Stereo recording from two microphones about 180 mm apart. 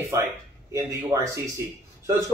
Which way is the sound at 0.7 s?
15° right (ahead or behind).